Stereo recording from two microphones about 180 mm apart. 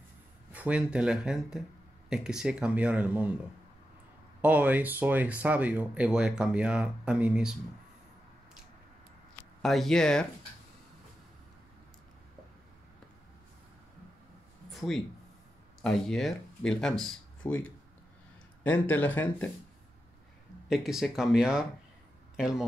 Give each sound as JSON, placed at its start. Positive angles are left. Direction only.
{"t": 0.5, "sound": "speech", "side_deg": -5}
{"t": 4.4, "sound": "speech", "side_deg": -10}
{"t": 9.6, "sound": "speech", "side_deg": 0}
{"t": 14.7, "sound": "a sound", "side_deg": 0}
{"t": 15.8, "sound": "speech", "side_deg": 5}
{"t": 20.6, "sound": "speech", "side_deg": 0}